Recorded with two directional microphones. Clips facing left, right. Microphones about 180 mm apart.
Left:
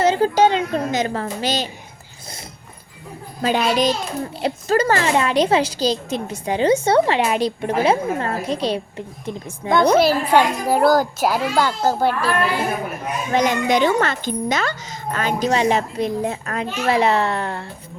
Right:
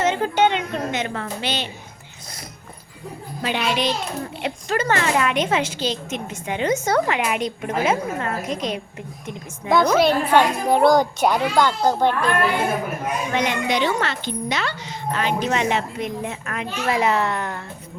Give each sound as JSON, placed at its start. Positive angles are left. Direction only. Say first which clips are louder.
{"t": 0.0, "sound": "a woman's voice", "louder": "left 4 dB", "side_deg": 35}
{"t": 3.4, "sound": "speech", "louder": "left 5 dB", "side_deg": 40}
{"t": 10.0, "sound": "a child's voice", "louder": "left 1 dB", "side_deg": 5}
{"t": 13.3, "sound": "speech", "louder": "left 6 dB", "side_deg": 40}